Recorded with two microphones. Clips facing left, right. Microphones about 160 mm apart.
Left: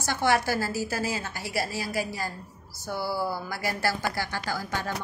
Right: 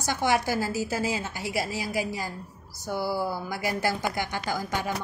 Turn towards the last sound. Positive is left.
turn(degrees=-15)  # may be behind; listen again after turning